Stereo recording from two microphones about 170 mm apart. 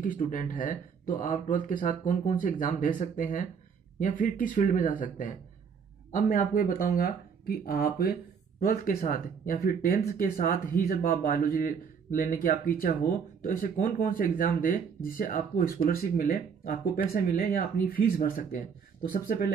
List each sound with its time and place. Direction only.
0.0 s speech: 50° left (ahead or behind)